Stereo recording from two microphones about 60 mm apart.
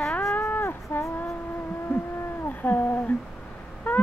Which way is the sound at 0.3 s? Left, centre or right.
Left.